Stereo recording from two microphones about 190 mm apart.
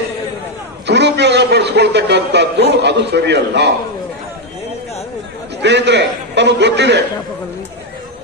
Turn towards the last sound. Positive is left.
turn(degrees=-65)  # may be behind; listen again after turning